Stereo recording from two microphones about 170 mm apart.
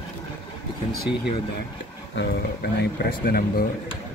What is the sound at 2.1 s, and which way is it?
Speech, 80° left.